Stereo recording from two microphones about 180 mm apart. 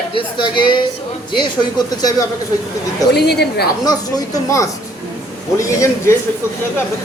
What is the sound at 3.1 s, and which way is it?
Speech, 65° left (ahead or behind).